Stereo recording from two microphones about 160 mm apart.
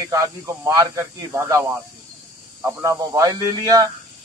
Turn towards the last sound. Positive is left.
turn(degrees=-25)  # may be behind; listen again after turning